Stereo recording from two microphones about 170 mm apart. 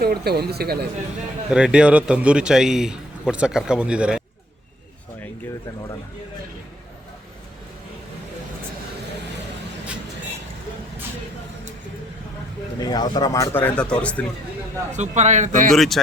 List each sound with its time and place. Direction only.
0.0 s speech: 65° right (ahead or behind)
1.5 s a man's voice: 5° right (ahead or behind)
12.8 s speech: 25° left (ahead or behind); by 14.3 s 5° left (ahead or behind)
14.9 s a man's voice: 45° right (ahead or behind)
15.7 s a man's voice: centre (ahead or behind)